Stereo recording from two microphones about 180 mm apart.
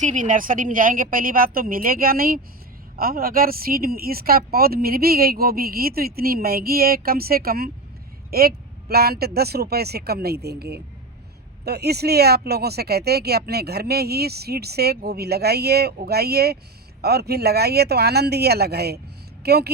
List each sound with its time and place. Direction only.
0.0 s a woman's voice: 45° right (ahead or behind); by 19.7 s 65° right (ahead or behind)